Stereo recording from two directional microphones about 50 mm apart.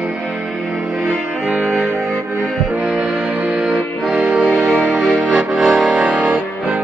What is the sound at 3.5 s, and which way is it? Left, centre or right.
Music, right.